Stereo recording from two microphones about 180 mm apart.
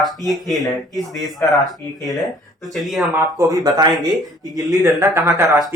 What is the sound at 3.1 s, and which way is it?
Speech, 20° right (ahead or behind).